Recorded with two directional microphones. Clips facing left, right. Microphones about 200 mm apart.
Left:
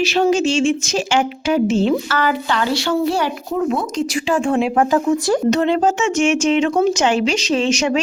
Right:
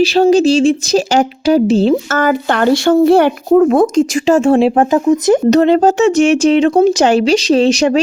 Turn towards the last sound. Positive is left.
turn(degrees=-35)  # may be behind; listen again after turning